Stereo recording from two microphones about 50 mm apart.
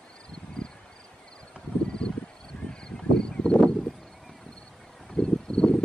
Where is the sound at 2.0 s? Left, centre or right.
Centre.